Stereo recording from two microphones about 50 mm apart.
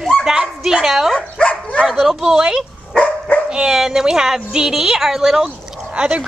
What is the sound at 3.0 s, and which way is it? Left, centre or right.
Dog, left.